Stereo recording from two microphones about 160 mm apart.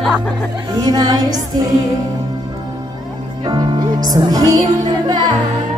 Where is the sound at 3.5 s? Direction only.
25° right (ahead or behind).